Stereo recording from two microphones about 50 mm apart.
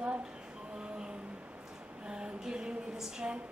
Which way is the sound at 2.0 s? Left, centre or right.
Centre.